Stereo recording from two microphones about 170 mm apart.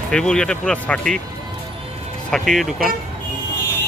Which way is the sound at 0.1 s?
5° left (ahead or behind).